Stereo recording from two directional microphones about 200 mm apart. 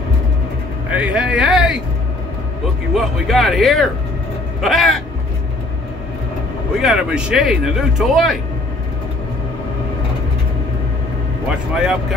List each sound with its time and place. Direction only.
0.8 s a sound: 5° right (ahead or behind)
2.9 s speech: centre (ahead or behind)
6.8 s speech: 5° right (ahead or behind)
11.7 s speech: 5° right (ahead or behind)